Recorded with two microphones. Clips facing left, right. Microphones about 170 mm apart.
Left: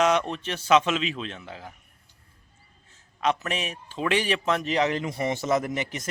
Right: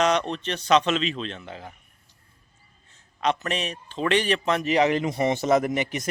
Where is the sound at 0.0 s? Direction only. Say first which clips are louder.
Even; 5° left (ahead or behind).